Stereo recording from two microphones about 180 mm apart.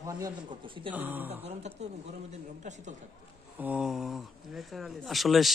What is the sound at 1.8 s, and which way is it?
Speech, 40° right (ahead or behind).